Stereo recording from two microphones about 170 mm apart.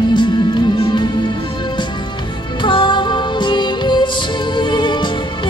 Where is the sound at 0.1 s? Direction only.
25° left (ahead or behind).